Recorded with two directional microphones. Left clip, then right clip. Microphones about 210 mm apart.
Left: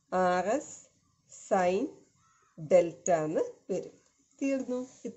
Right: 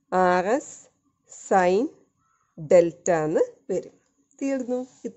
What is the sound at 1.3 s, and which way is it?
A woman's voice, 50° right (ahead or behind).